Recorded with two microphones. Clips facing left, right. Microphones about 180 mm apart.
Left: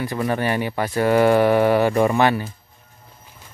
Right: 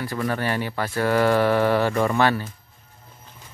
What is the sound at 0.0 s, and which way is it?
Speech, 20° left (ahead or behind).